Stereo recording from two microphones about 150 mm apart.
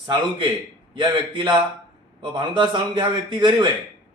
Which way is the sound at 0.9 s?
30° right (ahead or behind).